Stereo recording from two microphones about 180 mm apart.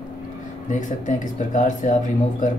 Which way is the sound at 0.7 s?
45° left (ahead or behind).